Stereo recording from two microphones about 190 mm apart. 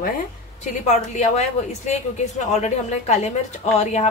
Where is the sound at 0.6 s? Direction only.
40° left (ahead or behind).